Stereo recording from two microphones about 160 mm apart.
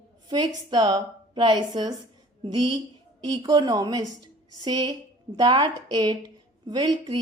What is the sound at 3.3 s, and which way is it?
A woman's voice, 25° right (ahead or behind).